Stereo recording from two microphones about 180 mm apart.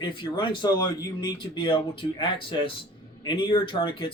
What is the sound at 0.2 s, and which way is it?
A man's voice, 25° left (ahead or behind).